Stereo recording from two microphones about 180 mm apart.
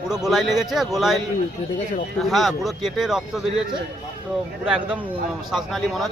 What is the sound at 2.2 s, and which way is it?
A man's voice, centre (ahead or behind).